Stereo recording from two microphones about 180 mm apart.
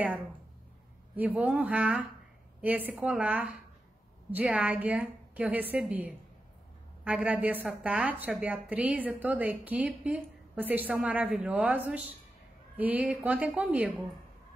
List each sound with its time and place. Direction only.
1.1 s a woman's voice: 10° right (ahead or behind)